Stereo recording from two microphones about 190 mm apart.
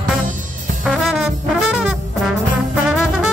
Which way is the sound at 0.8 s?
Centre (ahead or behind).